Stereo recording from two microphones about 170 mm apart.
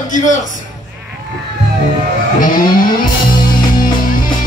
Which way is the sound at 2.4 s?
55° left (ahead or behind).